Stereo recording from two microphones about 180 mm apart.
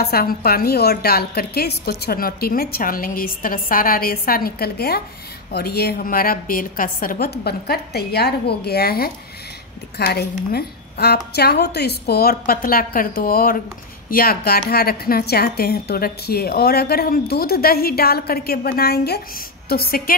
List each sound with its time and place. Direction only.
0.0 s a woman's voice: 55° left (ahead or behind)